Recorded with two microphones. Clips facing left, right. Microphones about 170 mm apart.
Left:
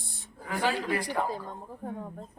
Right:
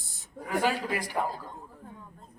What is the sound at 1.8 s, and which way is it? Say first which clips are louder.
Speech: left 10 dB; 60° left (ahead or behind).